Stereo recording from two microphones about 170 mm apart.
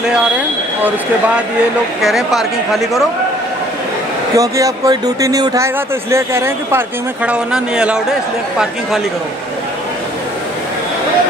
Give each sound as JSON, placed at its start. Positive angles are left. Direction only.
{"t": 2.0, "sound": "speech", "side_deg": 0}
{"t": 4.4, "sound": "speech", "side_deg": -20}